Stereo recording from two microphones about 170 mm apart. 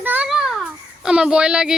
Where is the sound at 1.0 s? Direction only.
5° right (ahead or behind).